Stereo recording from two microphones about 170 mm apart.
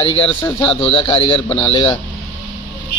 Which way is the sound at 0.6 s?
30° left (ahead or behind).